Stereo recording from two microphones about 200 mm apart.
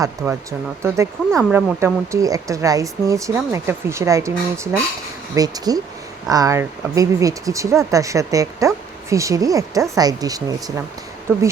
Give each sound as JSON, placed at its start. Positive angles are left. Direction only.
{"t": 0.2, "sound": "speech", "side_deg": -10}